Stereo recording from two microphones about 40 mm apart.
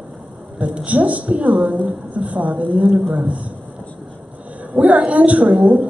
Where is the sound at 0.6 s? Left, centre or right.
Right.